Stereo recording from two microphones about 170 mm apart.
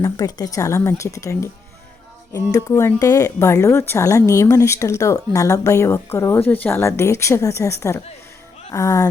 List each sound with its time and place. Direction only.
0.0 s speech: 20° left (ahead or behind)